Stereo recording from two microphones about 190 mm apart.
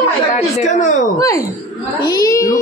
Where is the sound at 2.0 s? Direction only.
20° left (ahead or behind).